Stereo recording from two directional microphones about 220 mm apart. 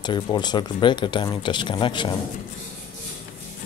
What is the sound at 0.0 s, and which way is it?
Speech, 20° left (ahead or behind).